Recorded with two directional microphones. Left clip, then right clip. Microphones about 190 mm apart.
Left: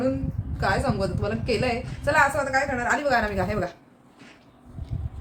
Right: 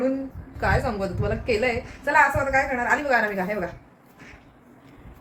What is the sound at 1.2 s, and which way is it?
A woman's voice, 15° left (ahead or behind).